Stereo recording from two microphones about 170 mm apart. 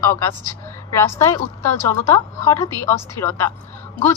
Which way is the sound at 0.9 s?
15° left (ahead or behind).